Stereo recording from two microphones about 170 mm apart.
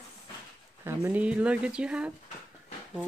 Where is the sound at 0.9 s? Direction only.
15° right (ahead or behind).